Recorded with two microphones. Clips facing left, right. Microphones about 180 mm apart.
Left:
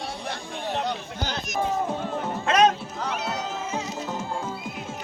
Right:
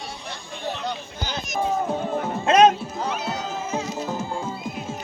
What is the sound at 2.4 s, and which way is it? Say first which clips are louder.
Music: right 4 dB; 25° right (ahead or behind).